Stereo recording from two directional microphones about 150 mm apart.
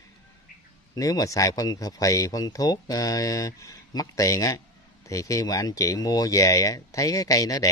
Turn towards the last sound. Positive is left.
turn(degrees=25)  # may be behind; listen again after turning